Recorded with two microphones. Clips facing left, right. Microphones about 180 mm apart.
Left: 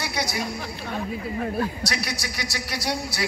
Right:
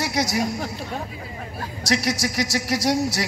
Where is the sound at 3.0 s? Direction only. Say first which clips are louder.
Right 5 dB; 40° right (ahead or behind).